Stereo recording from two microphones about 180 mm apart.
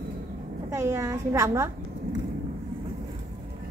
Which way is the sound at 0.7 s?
15° right (ahead or behind).